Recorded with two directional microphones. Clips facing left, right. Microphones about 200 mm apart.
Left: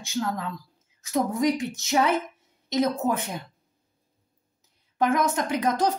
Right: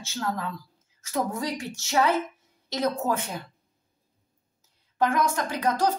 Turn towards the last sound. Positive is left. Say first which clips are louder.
# left 2 dB
turn(degrees=20)  # may be behind; listen again after turning